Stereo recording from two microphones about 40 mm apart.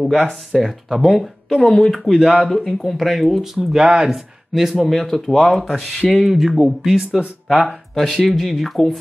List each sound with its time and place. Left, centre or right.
0.0 s speech: centre
1.5 s speech: left
2.0 s speech: centre
2.4 s speech: centre
3.5 s speech: centre
4.6 s speech: centre
7.0 s speech: right
7.4 s speech: centre